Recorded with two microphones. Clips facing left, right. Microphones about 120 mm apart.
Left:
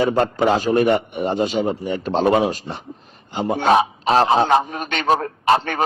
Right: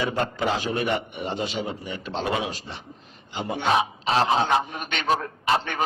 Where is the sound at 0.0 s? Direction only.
45° left (ahead or behind).